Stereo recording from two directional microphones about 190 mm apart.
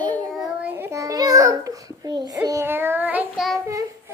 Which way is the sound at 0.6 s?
10° right (ahead or behind).